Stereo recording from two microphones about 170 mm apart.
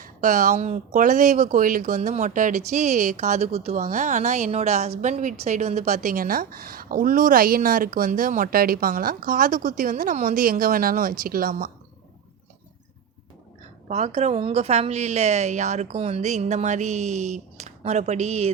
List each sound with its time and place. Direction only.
0.0 s a woman's voice: 50° right (ahead or behind)
13.8 s a woman's voice: 40° right (ahead or behind)